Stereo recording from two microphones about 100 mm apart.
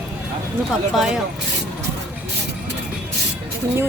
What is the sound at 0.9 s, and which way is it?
Speech, 5° right (ahead or behind).